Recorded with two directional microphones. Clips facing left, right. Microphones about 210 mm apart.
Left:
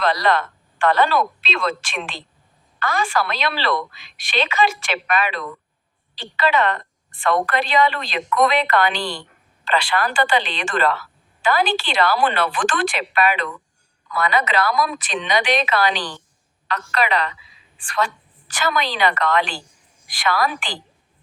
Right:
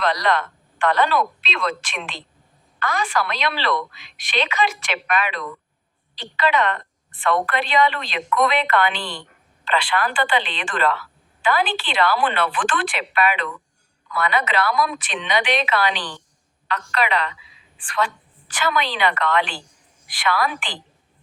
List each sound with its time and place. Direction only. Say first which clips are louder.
0.0 s a woman's voice: left 2 dB; 35° left (ahead or behind)